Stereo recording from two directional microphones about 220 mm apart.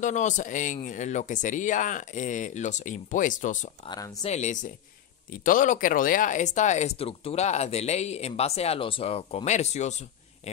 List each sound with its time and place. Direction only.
0.0 s speech: 35° left (ahead or behind)
3.9 s speech: 15° left (ahead or behind)
4.2 s speech: 30° left (ahead or behind)